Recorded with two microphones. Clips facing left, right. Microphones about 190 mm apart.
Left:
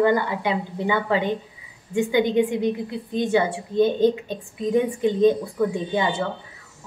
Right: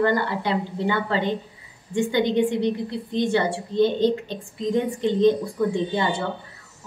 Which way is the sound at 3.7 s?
50° left (ahead or behind).